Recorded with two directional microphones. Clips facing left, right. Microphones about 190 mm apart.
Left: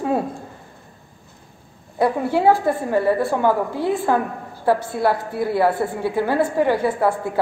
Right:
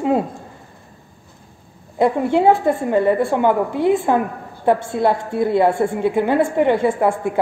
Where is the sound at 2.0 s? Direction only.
20° right (ahead or behind).